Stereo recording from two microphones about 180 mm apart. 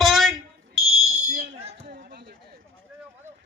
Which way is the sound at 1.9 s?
65° right (ahead or behind).